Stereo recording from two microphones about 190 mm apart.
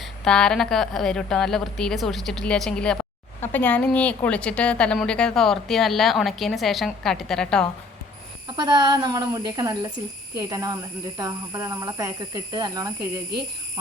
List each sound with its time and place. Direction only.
0.0 s a woman's voice: 5° left (ahead or behind)
8.5 s speech: 20° right (ahead or behind)